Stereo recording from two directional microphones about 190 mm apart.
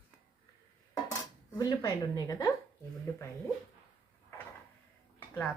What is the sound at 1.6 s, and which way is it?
Speech, 20° left (ahead or behind).